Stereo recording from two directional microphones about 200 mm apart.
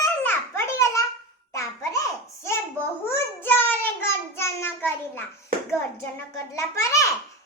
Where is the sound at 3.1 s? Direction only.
10° left (ahead or behind).